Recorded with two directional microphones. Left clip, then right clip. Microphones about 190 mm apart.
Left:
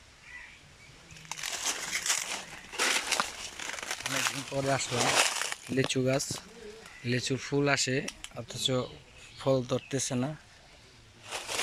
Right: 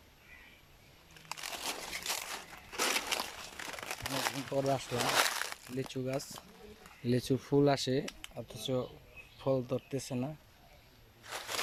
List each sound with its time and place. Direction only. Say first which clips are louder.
1.3 s crumpling: left 5 dB; 5° right (ahead or behind)
4.4 s speech: left 3 dB; centre (ahead or behind)
7.0 s speech: left 1 dB; 25° right (ahead or behind)
8.0 s speech: left 4 dB; centre (ahead or behind)
8.4 s speech: left 6 dB; 15° right (ahead or behind)
11.3 s a sound: left 4 dB; centre (ahead or behind)